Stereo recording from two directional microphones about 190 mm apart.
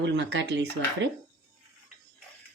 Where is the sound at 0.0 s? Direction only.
70° right (ahead or behind).